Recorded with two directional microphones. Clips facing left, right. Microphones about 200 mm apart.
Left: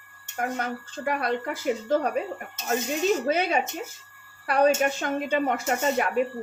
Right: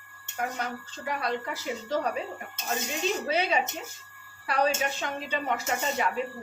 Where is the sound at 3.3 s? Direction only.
50° left (ahead or behind).